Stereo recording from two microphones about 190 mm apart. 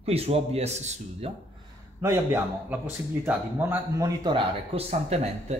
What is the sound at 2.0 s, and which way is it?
A man's voice, 10° right (ahead or behind).